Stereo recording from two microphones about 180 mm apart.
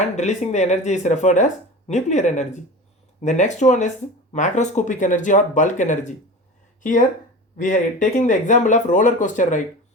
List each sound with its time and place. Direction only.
0.2 s speech: 40° left (ahead or behind)
7.5 s speech: 45° left (ahead or behind)